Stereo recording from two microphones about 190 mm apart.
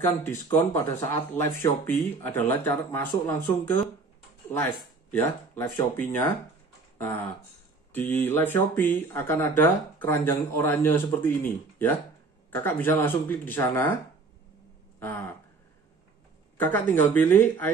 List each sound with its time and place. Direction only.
0.2 s speech: 15° left (ahead or behind)
7.9 s speech: 10° left (ahead or behind)
15.0 s a sound: 10° left (ahead or behind)
16.5 s speech: 10° left (ahead or behind)